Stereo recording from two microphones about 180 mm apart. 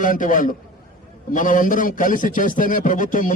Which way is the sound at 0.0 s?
45° left (ahead or behind).